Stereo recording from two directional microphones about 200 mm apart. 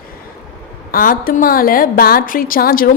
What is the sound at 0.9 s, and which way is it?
A woman's voice, 45° left (ahead or behind).